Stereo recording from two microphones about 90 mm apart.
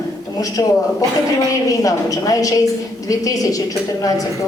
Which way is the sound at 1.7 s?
40° left (ahead or behind).